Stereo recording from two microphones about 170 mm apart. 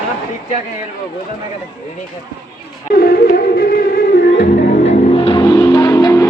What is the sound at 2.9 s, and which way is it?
Music, 65° left (ahead or behind).